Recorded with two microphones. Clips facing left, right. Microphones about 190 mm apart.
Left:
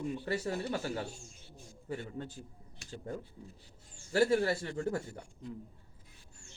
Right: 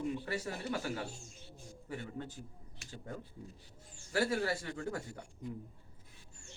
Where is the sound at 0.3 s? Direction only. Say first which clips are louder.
Left 4 dB; 30° left (ahead or behind).